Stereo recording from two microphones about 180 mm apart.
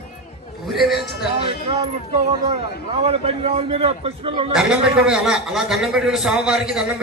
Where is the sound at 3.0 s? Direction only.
35° right (ahead or behind).